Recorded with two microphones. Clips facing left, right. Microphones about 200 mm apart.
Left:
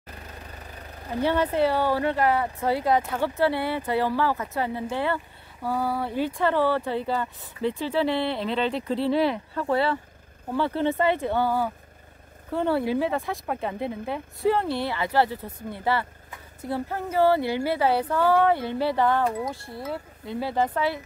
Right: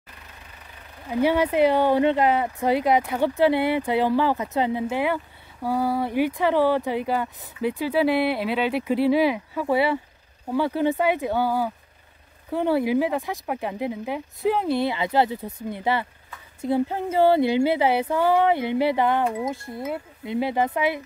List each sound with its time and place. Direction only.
1.2 s speech: 10° right (ahead or behind)